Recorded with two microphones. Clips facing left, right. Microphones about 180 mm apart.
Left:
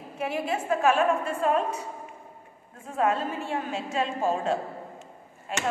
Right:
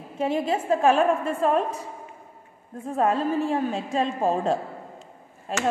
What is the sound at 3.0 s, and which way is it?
A woman's voice, 35° right (ahead or behind).